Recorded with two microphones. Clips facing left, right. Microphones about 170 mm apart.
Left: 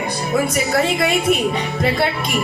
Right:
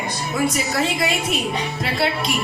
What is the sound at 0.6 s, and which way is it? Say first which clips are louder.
Speech: left 4 dB; 55° left (ahead or behind).